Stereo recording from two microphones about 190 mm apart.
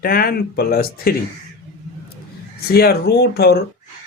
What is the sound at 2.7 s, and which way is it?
Speech, 55° left (ahead or behind).